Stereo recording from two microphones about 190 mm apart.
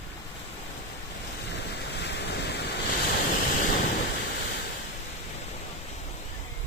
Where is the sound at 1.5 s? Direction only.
65° left (ahead or behind).